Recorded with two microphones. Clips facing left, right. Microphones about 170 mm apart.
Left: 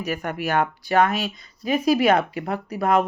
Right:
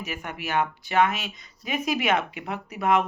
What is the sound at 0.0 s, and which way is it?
Speech, 40° left (ahead or behind).